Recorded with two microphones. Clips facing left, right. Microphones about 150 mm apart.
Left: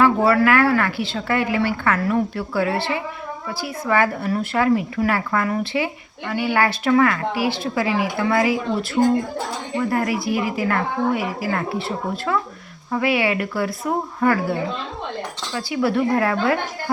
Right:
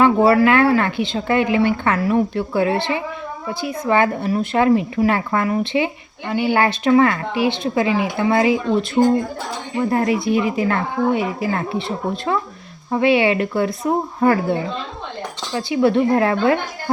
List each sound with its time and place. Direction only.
0.0 s speech: 20° right (ahead or behind)
15.5 s speech: 25° right (ahead or behind)